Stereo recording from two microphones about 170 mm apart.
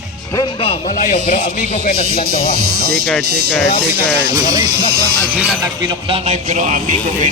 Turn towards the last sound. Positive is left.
turn(degrees=-45)  # may be behind; listen again after turning